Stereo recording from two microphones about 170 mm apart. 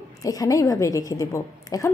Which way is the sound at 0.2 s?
20° left (ahead or behind).